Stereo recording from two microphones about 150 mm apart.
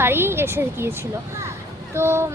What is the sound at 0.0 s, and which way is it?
Speech, 15° right (ahead or behind).